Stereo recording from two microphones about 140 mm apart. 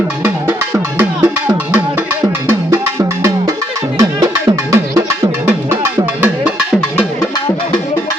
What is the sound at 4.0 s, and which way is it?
Music, 25° right (ahead or behind).